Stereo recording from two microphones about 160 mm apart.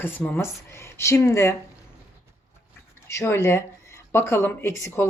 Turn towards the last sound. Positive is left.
turn(degrees=20)  # may be behind; listen again after turning